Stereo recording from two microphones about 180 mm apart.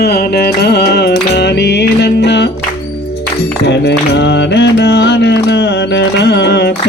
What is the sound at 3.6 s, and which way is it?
Music, 70° left (ahead or behind).